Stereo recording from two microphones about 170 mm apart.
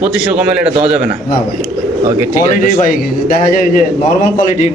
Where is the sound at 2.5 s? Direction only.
55° left (ahead or behind).